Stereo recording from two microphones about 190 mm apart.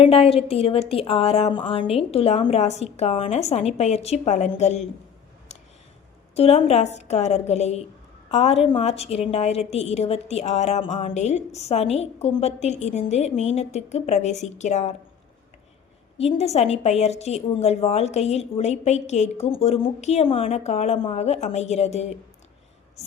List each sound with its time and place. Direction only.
0.0 s a woman's voice: 30° left (ahead or behind)
6.3 s a woman's voice: 30° left (ahead or behind)
16.1 s a woman's voice: 35° left (ahead or behind)